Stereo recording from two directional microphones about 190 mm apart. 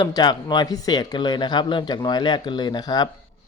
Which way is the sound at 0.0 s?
20° left (ahead or behind).